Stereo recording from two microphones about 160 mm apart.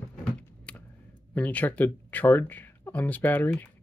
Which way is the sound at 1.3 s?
10° left (ahead or behind).